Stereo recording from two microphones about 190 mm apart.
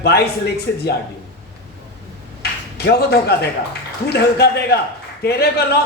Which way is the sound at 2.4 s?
55° left (ahead or behind).